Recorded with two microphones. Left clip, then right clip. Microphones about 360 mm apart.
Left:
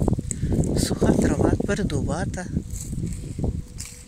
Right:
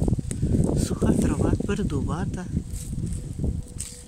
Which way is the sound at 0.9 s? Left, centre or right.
Left.